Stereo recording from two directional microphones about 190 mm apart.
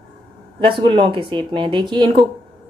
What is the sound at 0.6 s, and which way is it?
Speech, 25° right (ahead or behind).